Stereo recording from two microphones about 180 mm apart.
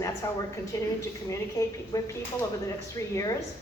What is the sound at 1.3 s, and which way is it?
Speech, 15° left (ahead or behind).